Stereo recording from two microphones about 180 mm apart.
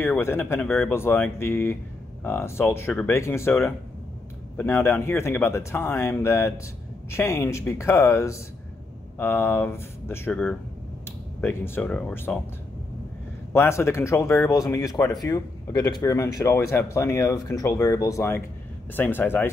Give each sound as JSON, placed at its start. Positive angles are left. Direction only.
{"t": 0.0, "sound": "speech", "side_deg": 10}
{"t": 13.5, "sound": "speech", "side_deg": 15}